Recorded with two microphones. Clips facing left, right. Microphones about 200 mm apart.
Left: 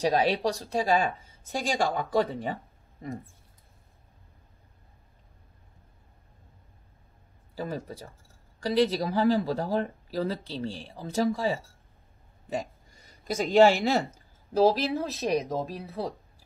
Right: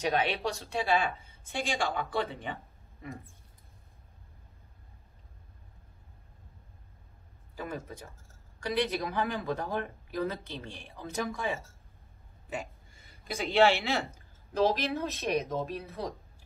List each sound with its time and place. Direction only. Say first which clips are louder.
0.0 s speech: left 5 dB; 35° left (ahead or behind)
7.5 s speech: left 4 dB; 35° left (ahead or behind)
13.2 s speech: left 5 dB; 45° left (ahead or behind)
14.6 s speech: left 5 dB; 35° left (ahead or behind)